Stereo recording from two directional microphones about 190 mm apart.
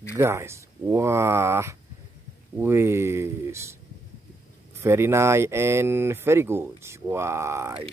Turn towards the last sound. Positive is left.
turn(degrees=-15)  # may be behind; listen again after turning